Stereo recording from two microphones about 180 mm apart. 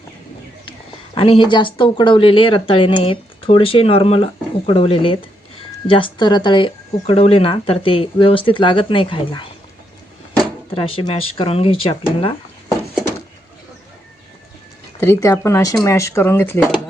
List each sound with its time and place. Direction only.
1.1 s speech: 30° left (ahead or behind)
10.8 s speech: 30° left (ahead or behind)
12.2 s a sound: 30° left (ahead or behind)
15.0 s speech: 15° left (ahead or behind)